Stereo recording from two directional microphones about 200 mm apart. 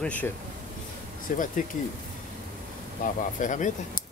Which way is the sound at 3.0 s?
40° left (ahead or behind).